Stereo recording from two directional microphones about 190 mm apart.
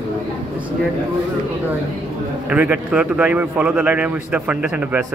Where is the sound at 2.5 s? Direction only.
5° right (ahead or behind).